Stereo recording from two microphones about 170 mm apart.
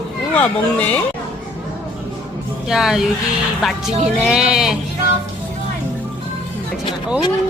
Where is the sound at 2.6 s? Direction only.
5° right (ahead or behind).